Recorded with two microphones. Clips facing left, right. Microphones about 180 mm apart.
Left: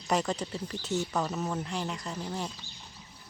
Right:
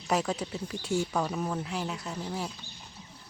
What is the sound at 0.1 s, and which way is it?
Speech, 5° right (ahead or behind).